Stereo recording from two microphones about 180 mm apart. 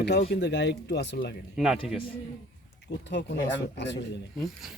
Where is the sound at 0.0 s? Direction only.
65° left (ahead or behind).